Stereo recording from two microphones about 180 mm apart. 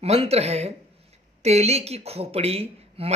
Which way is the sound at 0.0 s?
35° right (ahead or behind).